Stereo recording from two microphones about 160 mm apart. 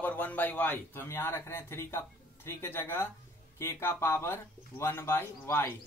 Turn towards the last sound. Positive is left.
turn(degrees=15)  # may be behind; listen again after turning